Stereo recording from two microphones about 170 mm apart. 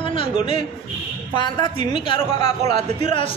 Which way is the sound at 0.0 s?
30° left (ahead or behind).